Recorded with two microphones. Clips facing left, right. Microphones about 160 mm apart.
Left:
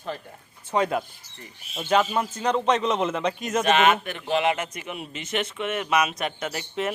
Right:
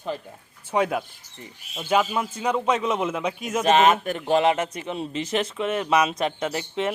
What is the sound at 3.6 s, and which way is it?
A man's voice, 35° right (ahead or behind).